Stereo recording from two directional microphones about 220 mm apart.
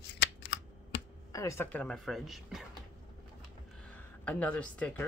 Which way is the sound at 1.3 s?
15° left (ahead or behind).